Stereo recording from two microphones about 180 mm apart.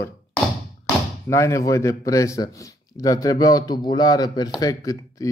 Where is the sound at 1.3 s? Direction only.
15° left (ahead or behind).